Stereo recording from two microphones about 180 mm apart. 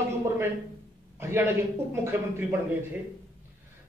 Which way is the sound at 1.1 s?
15° right (ahead or behind).